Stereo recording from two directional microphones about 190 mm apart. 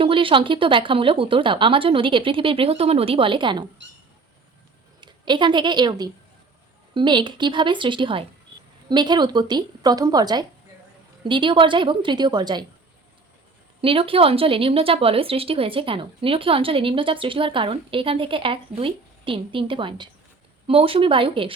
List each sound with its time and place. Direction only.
0.0 s a woman's voice: 30° right (ahead or behind)
4.9 s a woman's voice: 25° right (ahead or behind)
13.8 s a woman's voice: 30° right (ahead or behind)